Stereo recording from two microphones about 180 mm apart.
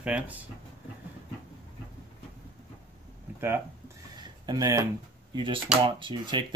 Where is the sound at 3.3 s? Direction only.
10° right (ahead or behind).